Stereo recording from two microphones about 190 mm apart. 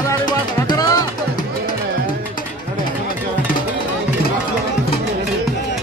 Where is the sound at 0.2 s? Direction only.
20° left (ahead or behind).